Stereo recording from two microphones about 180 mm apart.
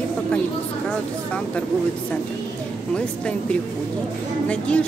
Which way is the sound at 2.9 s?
5° left (ahead or behind).